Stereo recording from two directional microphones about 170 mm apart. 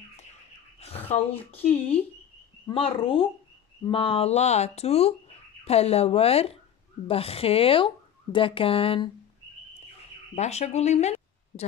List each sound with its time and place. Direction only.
0.7 s a sound: 35° left (ahead or behind)
1.3 s speech: 35° left (ahead or behind)
2.7 s speech: 35° left (ahead or behind)
10.3 s speech: 40° left (ahead or behind)